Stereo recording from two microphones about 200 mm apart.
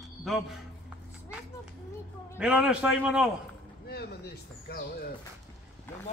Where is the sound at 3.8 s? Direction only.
55° left (ahead or behind).